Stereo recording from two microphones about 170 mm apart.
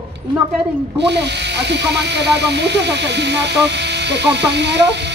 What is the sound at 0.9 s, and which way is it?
Speech, 90° right.